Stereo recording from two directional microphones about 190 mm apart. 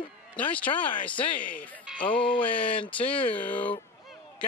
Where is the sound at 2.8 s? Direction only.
5° left (ahead or behind).